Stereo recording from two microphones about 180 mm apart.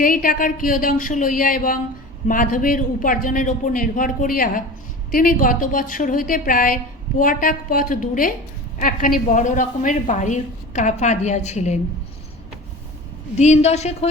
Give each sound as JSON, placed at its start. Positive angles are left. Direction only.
{"t": 0.0, "sound": "a woman's voice", "side_deg": 50}
{"t": 13.4, "sound": "a woman's voice", "side_deg": 40}